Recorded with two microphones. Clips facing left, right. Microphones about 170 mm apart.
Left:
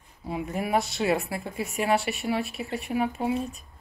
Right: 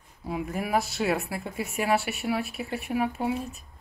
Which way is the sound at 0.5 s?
Centre (ahead or behind).